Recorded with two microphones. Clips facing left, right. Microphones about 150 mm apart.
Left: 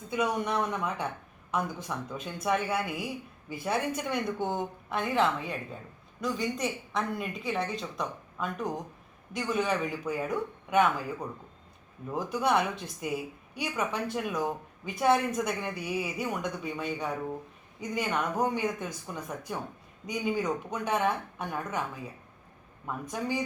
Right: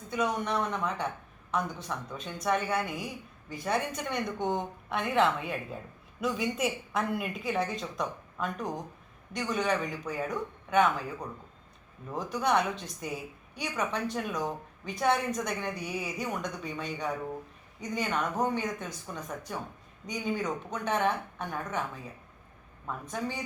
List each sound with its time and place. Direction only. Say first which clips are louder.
0.1 s a woman's voice: left 1 dB; 10° left (ahead or behind)